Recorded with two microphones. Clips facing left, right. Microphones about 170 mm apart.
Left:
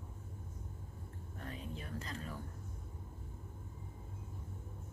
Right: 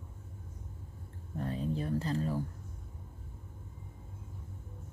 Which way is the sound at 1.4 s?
35° right (ahead or behind).